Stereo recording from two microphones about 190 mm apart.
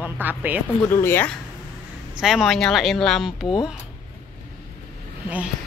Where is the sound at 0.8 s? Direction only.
10° left (ahead or behind).